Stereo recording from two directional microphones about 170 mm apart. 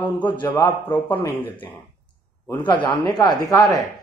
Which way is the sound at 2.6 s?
30° left (ahead or behind).